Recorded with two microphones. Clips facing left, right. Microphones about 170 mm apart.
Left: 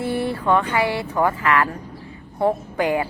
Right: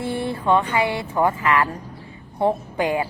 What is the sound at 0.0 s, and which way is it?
Speech, 25° right (ahead or behind).